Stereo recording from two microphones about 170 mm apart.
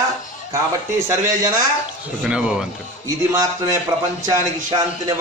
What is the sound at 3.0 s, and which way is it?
A man's voice, 20° right (ahead or behind).